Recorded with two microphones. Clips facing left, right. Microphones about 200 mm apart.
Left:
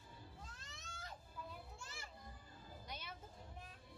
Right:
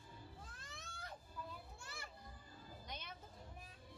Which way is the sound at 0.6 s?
55° right (ahead or behind).